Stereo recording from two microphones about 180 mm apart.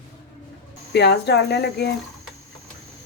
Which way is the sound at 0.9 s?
65° left (ahead or behind).